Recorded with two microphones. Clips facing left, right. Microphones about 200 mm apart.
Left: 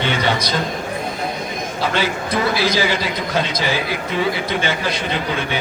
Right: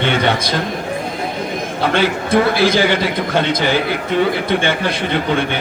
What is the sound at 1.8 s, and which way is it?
A man's voice, 55° right (ahead or behind).